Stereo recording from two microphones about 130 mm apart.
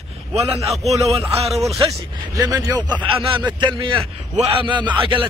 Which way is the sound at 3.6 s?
40° right (ahead or behind).